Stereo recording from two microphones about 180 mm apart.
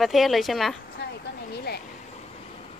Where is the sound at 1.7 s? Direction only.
60° left (ahead or behind).